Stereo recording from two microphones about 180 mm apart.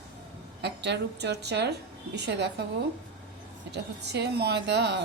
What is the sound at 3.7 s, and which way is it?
A woman's voice, 70° right (ahead or behind).